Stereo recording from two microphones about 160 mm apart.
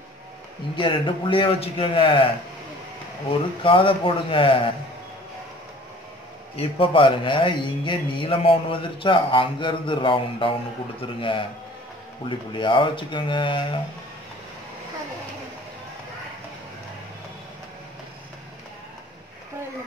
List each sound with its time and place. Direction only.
0.7 s speech: 30° left (ahead or behind)
3.6 s speech: 35° left (ahead or behind)
6.5 s speech: 35° left (ahead or behind)